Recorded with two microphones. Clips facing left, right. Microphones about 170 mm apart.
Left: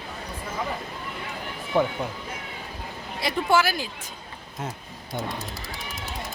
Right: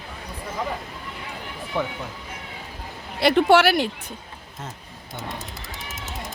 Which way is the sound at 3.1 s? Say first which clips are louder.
Right 7 dB; 70° right (ahead or behind).